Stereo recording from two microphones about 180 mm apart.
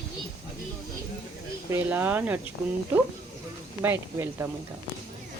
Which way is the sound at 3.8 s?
10° right (ahead or behind).